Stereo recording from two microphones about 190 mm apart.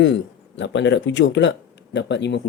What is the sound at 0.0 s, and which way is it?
Speech, 70° left (ahead or behind).